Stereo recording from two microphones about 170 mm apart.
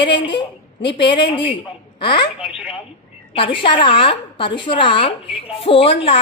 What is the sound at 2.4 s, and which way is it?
Telephone, 5° right (ahead or behind).